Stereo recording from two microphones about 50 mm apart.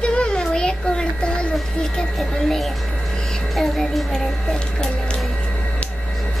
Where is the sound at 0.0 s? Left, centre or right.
Centre.